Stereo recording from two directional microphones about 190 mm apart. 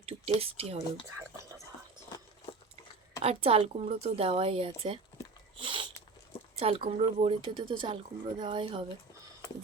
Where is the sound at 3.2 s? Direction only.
30° right (ahead or behind).